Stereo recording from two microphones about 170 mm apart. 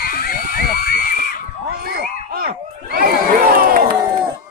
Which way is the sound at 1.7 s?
65° right (ahead or behind).